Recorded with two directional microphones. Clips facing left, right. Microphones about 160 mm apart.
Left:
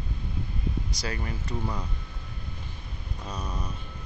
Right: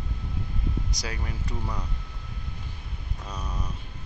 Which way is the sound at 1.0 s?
10° right (ahead or behind).